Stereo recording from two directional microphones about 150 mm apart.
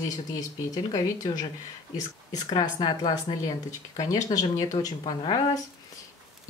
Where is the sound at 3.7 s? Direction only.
50° left (ahead or behind).